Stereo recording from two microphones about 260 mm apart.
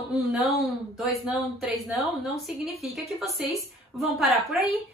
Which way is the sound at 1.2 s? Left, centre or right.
Centre.